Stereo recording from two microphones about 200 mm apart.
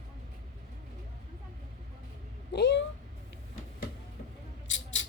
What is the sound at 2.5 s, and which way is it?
Cat, 60° left (ahead or behind).